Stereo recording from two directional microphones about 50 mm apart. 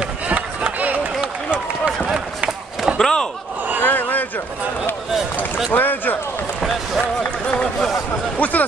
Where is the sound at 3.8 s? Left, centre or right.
Left.